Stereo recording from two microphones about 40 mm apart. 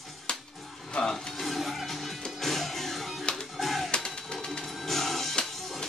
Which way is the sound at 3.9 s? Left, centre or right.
Left.